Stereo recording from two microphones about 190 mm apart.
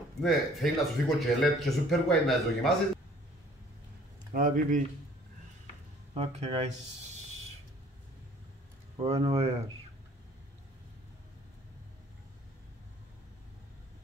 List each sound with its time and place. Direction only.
0.2 s speech: centre (ahead or behind)
4.3 s speech: 45° right (ahead or behind)
6.1 s speech: 30° right (ahead or behind)
9.0 s speech: 30° right (ahead or behind)